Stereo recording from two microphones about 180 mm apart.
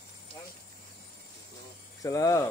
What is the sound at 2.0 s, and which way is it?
Hum, 20° left (ahead or behind).